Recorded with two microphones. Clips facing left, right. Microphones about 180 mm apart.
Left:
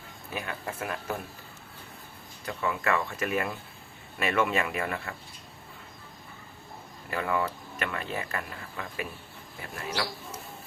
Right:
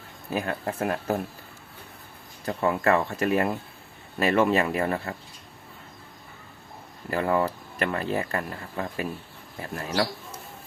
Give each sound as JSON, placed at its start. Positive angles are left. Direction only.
{"t": 0.3, "sound": "speech", "side_deg": -40}
{"t": 2.4, "sound": "speech", "side_deg": -40}
{"t": 7.1, "sound": "speech", "side_deg": -40}